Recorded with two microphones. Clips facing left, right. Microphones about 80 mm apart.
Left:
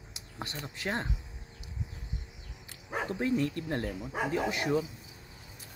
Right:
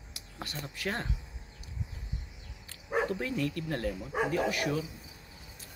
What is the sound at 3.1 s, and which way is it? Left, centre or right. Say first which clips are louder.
Speech: left 3 dB; left.